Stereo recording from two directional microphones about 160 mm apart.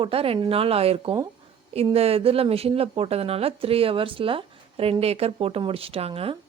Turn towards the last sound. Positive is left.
turn(degrees=-35)  # may be behind; listen again after turning